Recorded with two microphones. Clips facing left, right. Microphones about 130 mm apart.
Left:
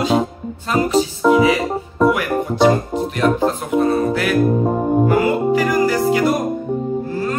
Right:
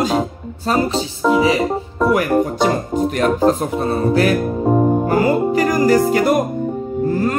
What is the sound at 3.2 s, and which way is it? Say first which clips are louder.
Music: right 1 dB; 40° right (ahead or behind).